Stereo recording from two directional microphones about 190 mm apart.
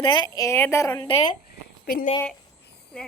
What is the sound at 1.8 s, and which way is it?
Speech, 50° left (ahead or behind).